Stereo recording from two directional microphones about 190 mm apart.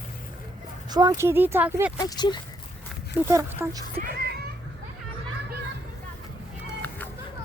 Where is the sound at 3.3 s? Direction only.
15° right (ahead or behind).